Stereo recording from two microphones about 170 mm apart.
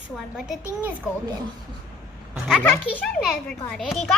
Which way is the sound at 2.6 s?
10° left (ahead or behind).